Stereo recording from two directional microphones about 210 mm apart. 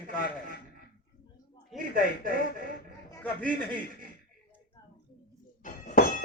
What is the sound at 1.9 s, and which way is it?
Speech, 40° right (ahead or behind).